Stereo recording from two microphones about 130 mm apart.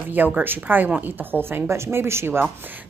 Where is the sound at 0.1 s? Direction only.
15° right (ahead or behind).